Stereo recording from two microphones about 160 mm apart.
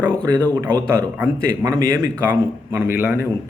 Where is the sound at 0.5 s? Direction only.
15° right (ahead or behind).